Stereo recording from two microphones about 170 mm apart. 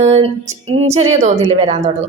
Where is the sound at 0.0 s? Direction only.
40° right (ahead or behind).